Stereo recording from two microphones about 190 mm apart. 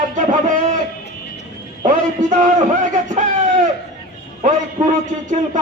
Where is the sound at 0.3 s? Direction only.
40° right (ahead or behind).